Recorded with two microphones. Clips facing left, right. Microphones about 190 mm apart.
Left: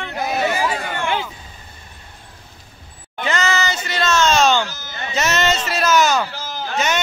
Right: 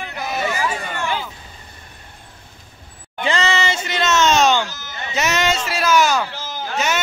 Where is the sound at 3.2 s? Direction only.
30° right (ahead or behind); by 6.2 s 10° right (ahead or behind).